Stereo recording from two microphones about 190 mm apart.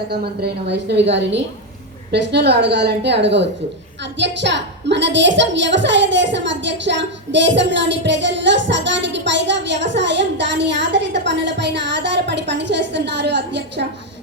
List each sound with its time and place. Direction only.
0.1 s a woman's voice: 60° right (ahead or behind)